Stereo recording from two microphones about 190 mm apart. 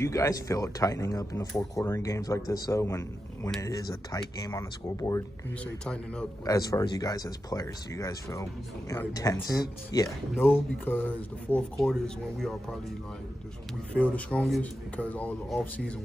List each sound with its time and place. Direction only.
0.0 s speech: 15° left (ahead or behind)
6.4 s speech: 20° left (ahead or behind); by 12.7 s 5° left (ahead or behind)
14.1 s speech: 5° left (ahead or behind)